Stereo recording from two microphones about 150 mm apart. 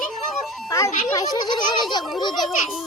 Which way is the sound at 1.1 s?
30° left (ahead or behind).